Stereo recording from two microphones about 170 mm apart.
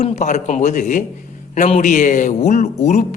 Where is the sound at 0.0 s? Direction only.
45° left (ahead or behind).